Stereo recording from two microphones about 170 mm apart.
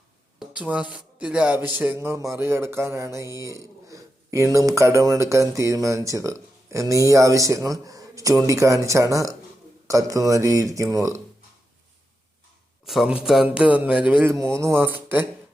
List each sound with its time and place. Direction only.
0.3 s a man's voice: 5° right (ahead or behind)
12.8 s a man's voice: centre (ahead or behind)